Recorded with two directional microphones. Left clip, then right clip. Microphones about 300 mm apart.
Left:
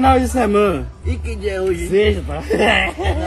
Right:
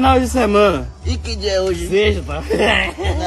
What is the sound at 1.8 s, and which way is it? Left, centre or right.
Speech, centre.